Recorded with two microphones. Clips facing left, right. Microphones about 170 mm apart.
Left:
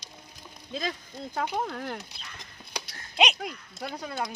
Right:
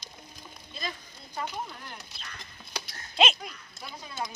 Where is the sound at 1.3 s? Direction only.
75° left (ahead or behind).